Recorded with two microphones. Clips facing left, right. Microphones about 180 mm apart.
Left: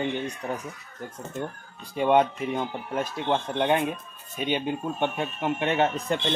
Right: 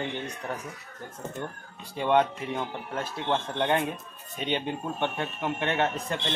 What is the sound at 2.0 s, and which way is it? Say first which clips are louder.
Speech: left 3 dB; 15° left (ahead or behind).